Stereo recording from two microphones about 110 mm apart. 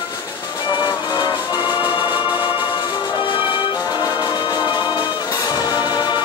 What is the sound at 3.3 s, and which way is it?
Music, 15° right (ahead or behind).